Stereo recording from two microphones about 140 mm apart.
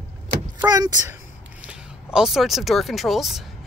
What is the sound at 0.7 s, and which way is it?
Speech, 25° right (ahead or behind).